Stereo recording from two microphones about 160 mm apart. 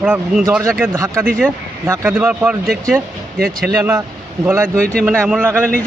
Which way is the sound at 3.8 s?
20° right (ahead or behind).